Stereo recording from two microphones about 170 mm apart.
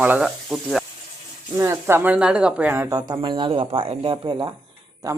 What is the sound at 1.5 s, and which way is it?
Speech, 15° right (ahead or behind).